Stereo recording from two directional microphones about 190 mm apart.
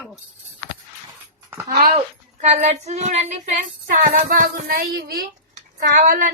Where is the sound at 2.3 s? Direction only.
35° right (ahead or behind).